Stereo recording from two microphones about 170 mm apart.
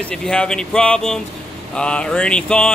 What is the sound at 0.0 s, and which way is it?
Speech, 5° left (ahead or behind).